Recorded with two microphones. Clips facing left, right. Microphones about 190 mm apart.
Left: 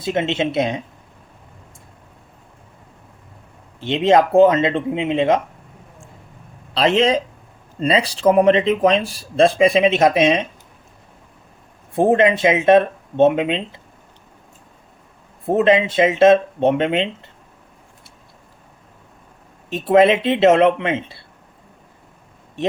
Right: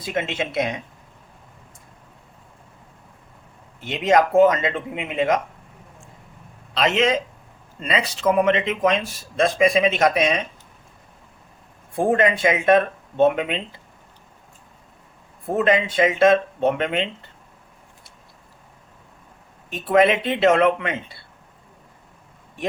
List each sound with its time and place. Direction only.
0.0 s speech: 25° left (ahead or behind)
3.8 s speech: 30° left (ahead or behind)
6.7 s speech: 35° left (ahead or behind)
11.9 s speech: 25° left (ahead or behind)
15.4 s speech: 25° left (ahead or behind)
19.7 s speech: 25° left (ahead or behind)